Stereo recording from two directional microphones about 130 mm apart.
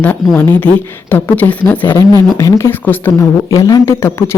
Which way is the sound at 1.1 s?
15° left (ahead or behind).